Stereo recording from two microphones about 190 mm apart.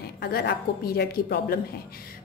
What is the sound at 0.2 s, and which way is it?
A woman's voice, 55° left (ahead or behind).